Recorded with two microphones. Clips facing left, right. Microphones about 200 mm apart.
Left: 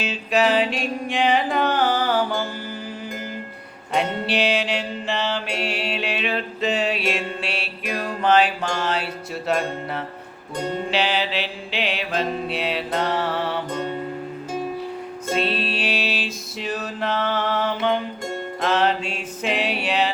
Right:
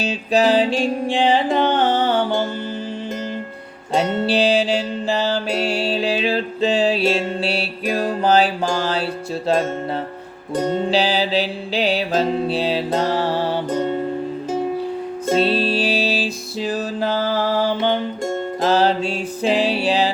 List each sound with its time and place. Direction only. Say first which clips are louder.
0.0 s mantra: right 3 dB; 35° right (ahead or behind)
3.9 s mantra: right 5 dB; 35° right (ahead or behind)
10.8 s music: right 4 dB; 35° right (ahead or behind)
15.4 s music: right 6 dB; 35° right (ahead or behind)